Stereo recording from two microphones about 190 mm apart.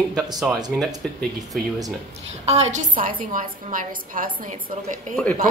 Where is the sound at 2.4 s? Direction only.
35° right (ahead or behind).